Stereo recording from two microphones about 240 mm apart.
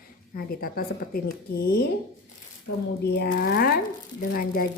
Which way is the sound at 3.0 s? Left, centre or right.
Left.